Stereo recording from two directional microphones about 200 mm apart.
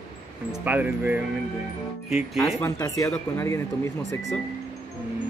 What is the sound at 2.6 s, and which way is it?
Speech, 15° left (ahead or behind).